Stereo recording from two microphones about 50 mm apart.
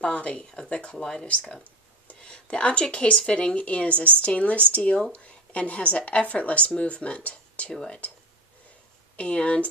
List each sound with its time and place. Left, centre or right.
0.0 s speech: left
9.1 s speech: left